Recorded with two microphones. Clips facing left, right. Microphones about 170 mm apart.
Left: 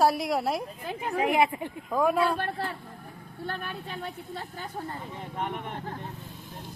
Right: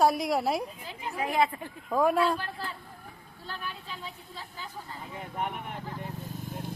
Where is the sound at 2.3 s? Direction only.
60° left (ahead or behind).